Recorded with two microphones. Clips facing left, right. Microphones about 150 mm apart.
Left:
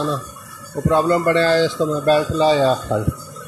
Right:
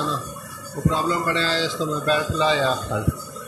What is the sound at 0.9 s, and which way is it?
A man's voice, 55° left (ahead or behind).